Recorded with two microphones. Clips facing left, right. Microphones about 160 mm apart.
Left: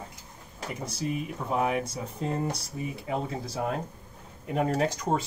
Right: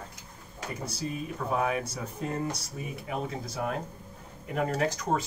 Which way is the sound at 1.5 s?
20° left (ahead or behind).